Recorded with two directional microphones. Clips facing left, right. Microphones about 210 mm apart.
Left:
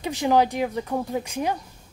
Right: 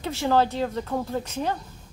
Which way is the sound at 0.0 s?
15° left (ahead or behind).